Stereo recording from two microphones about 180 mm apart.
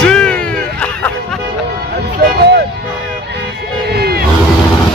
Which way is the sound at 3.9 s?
60° right (ahead or behind).